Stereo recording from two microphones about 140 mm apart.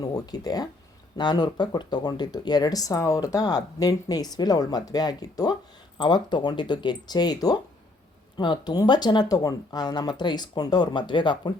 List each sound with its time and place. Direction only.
0.0 s speech: 25° left (ahead or behind)